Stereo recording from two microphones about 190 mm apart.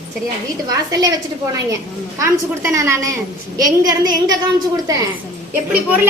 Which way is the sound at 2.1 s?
15° right (ahead or behind).